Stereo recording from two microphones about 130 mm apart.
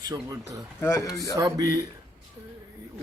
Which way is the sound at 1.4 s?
25° right (ahead or behind).